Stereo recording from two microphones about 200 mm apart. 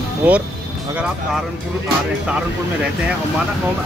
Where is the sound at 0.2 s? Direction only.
10° right (ahead or behind).